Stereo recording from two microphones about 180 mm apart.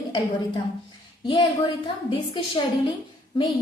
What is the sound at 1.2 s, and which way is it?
Speech, 25° left (ahead or behind).